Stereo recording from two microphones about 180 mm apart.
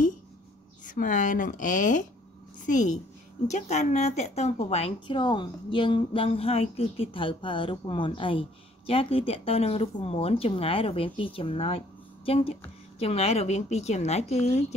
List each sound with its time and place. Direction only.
0.8 s a woman's voice: 45° left (ahead or behind)